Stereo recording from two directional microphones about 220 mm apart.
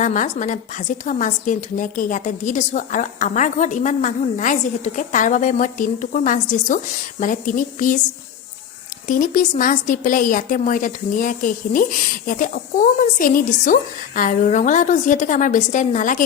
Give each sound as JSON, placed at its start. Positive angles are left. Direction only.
{"t": 0.0, "sound": "a woman's voice", "side_deg": 35}
{"t": 9.0, "sound": "a woman's voice", "side_deg": 35}